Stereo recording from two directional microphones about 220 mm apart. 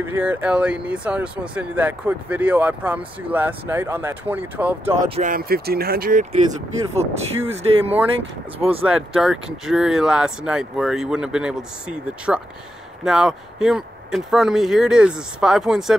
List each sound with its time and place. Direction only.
0.0 s speech: 10° right (ahead or behind)
5.1 s speech: 35° right (ahead or behind)
7.0 s speech: 30° right (ahead or behind)
8.8 s speech: 5° right (ahead or behind)